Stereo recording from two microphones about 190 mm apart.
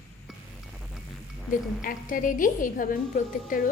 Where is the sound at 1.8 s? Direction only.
45° left (ahead or behind).